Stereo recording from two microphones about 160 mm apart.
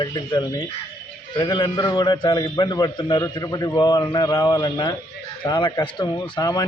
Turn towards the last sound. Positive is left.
turn(degrees=25)  # may be behind; listen again after turning